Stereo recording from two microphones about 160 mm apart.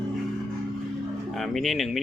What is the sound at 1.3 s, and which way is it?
Speech, centre (ahead or behind).